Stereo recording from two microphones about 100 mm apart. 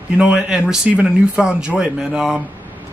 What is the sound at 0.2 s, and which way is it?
Speech, 10° right (ahead or behind).